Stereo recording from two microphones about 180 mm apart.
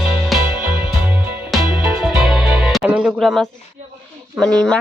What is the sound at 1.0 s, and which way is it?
Music, 10° right (ahead or behind).